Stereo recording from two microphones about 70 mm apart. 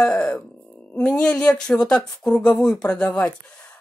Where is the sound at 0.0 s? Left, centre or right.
Centre.